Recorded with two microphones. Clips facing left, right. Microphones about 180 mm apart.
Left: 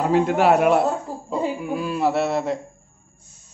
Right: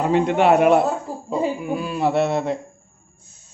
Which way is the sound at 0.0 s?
Centre (ahead or behind).